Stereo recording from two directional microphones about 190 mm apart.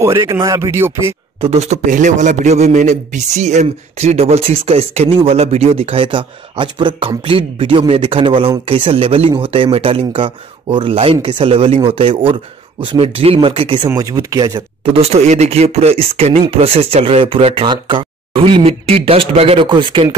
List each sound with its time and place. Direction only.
0.0 s speech: 15° right (ahead or behind)
1.4 s a man's voice: 35° right (ahead or behind)
13.8 s speech: 20° right (ahead or behind)
14.9 s a man's voice: 35° right (ahead or behind)